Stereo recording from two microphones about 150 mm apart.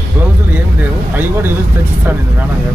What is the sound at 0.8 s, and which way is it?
Speech, 15° right (ahead or behind).